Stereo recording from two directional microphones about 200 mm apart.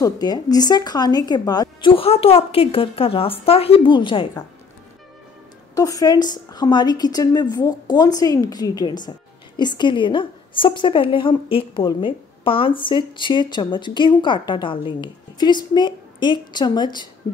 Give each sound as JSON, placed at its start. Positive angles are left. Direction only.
{"t": 0.0, "sound": "speech", "side_deg": 20}
{"t": 5.8, "sound": "speech", "side_deg": 20}